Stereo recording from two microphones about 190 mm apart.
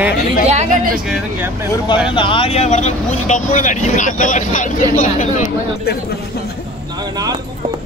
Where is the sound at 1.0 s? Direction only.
5° right (ahead or behind).